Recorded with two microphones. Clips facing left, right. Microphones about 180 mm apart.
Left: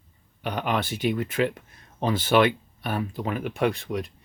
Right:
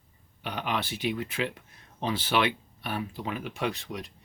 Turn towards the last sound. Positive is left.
turn(degrees=50)  # may be behind; listen again after turning